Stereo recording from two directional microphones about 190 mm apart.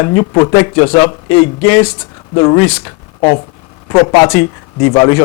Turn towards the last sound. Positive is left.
turn(degrees=20)  # may be behind; listen again after turning